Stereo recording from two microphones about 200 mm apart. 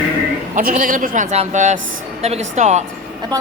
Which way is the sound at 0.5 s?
40° right (ahead or behind).